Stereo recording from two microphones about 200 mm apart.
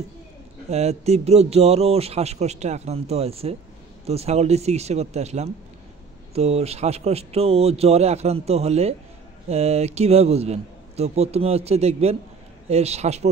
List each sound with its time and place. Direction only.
0.7 s speech: 35° right (ahead or behind)